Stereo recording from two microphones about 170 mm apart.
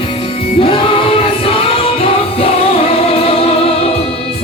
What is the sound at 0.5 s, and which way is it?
Music, 35° left (ahead or behind).